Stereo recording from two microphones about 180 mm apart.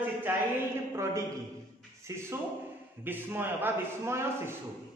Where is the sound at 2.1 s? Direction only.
15° right (ahead or behind).